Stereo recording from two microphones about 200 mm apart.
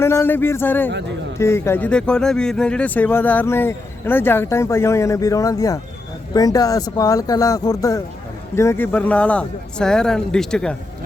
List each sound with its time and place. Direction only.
0.0 s speech: 10° left (ahead or behind)